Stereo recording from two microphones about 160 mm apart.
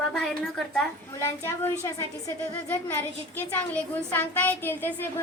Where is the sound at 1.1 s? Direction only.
15° left (ahead or behind).